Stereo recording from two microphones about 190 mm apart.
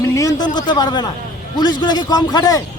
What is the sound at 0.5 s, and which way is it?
A man's voice, 20° left (ahead or behind).